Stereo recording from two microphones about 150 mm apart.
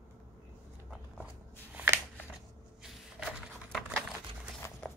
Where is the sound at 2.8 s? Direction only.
5° right (ahead or behind).